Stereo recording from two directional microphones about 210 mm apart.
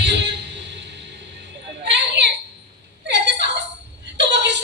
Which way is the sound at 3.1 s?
55° right (ahead or behind).